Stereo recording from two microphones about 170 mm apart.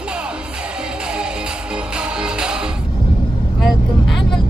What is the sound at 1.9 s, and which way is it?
Music, 5° right (ahead or behind).